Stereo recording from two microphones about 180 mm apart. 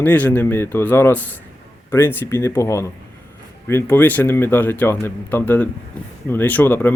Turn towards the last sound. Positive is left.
turn(degrees=10)  # may be behind; listen again after turning